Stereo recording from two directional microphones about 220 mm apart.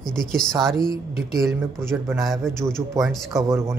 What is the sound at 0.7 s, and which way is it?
Speech, 40° right (ahead or behind).